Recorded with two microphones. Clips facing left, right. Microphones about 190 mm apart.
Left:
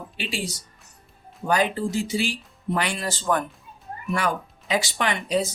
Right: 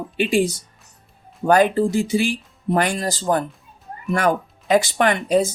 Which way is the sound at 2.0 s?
55° right (ahead or behind).